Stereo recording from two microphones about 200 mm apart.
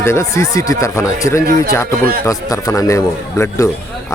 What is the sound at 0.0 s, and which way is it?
Speech, 15° left (ahead or behind).